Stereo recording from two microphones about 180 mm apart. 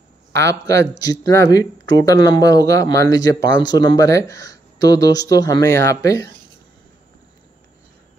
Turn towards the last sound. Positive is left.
turn(degrees=20)  # may be behind; listen again after turning